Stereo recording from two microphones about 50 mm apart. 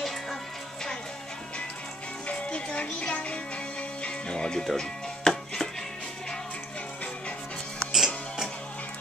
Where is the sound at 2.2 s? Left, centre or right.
Left.